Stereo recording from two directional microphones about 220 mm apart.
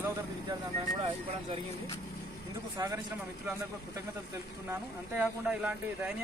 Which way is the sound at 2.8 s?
15° right (ahead or behind).